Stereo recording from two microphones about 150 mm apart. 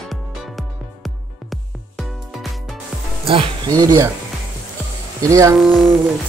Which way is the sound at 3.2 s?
35° right (ahead or behind).